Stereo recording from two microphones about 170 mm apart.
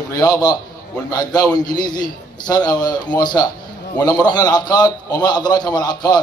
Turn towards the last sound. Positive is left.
turn(degrees=25)  # may be behind; listen again after turning